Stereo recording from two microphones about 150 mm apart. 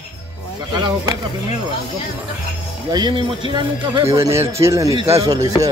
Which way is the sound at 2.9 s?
30° right (ahead or behind).